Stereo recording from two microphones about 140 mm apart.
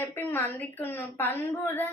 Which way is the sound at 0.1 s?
15° left (ahead or behind).